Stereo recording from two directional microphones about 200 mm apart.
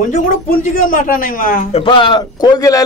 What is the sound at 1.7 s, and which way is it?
A man's voice, 25° left (ahead or behind).